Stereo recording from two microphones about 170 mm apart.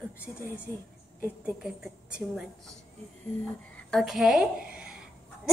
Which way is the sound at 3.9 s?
Centre (ahead or behind).